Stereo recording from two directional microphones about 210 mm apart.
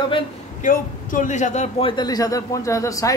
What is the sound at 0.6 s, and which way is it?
A man's voice, 40° left (ahead or behind).